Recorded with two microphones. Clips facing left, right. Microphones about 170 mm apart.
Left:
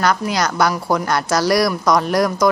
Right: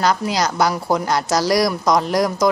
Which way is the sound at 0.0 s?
25° right (ahead or behind).